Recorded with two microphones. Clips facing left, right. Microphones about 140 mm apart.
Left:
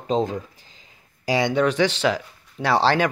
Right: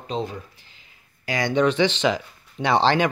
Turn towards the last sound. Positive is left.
turn(degrees=5)  # may be behind; listen again after turning